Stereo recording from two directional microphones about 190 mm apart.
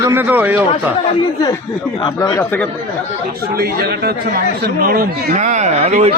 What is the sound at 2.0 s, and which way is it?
Speech, 20° left (ahead or behind).